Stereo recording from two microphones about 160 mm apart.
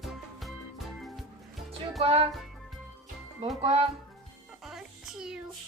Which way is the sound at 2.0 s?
40° right (ahead or behind).